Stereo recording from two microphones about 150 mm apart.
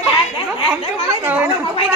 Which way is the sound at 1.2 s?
15° right (ahead or behind).